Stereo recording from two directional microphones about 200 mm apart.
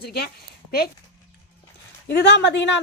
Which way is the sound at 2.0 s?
60° left (ahead or behind).